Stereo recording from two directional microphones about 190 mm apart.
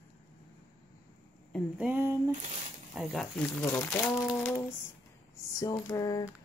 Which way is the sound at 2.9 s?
Centre (ahead or behind).